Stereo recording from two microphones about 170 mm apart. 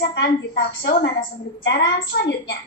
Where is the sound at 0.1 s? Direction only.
80° left.